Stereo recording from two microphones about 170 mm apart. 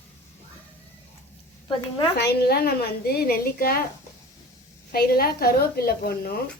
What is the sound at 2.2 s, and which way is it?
A woman's voice, 70° left (ahead or behind).